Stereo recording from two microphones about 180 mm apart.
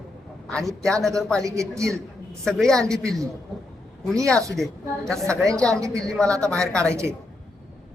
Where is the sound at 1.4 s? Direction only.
15° right (ahead or behind).